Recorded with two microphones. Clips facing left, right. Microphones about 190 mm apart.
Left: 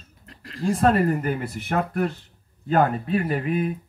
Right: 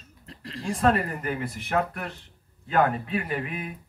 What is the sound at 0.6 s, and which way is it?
Speech, 40° left (ahead or behind).